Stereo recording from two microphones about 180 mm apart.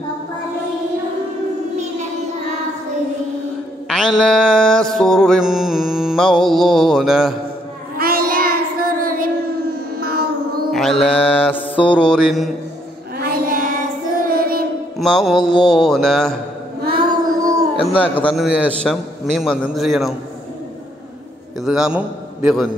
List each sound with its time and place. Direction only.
3.9 s mantra: centre (ahead or behind)
8.0 s child singing: 55° right (ahead or behind)
9.9 s music: 60° right (ahead or behind)
10.7 s a man's voice: centre (ahead or behind)
13.2 s music: 50° right (ahead or behind)
14.2 s child singing: 55° right (ahead or behind)
15.0 s a man's voice: centre (ahead or behind)
16.9 s child singing: 20° right (ahead or behind)
17.8 s a man's voice: 10° left (ahead or behind)
21.5 s a man's voice: centre (ahead or behind)